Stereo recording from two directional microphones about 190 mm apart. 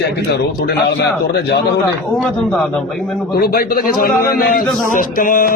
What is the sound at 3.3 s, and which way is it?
A man's voice, 55° left (ahead or behind).